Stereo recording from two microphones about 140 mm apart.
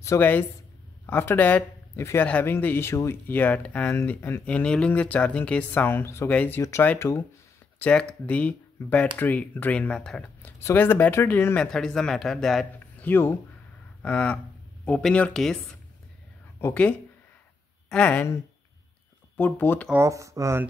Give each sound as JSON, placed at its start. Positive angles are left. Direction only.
{"t": 0.0, "sound": "speech", "side_deg": 15}
{"t": 11.6, "sound": "a man's voice", "side_deg": 5}
{"t": 12.7, "sound": "a sound", "side_deg": 15}
{"t": 14.0, "sound": "speech", "side_deg": 10}
{"t": 17.9, "sound": "speech", "side_deg": 10}
{"t": 19.3, "sound": "speech", "side_deg": 15}
{"t": 19.9, "sound": "speech", "side_deg": -20}